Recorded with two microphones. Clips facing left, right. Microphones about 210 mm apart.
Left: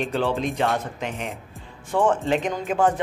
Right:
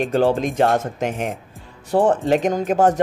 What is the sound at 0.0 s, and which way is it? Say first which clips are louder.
A man's voice: right 6 dB; 45° right (ahead or behind).